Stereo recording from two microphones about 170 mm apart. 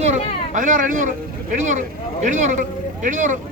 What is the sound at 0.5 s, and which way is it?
Speech, 50° right (ahead or behind).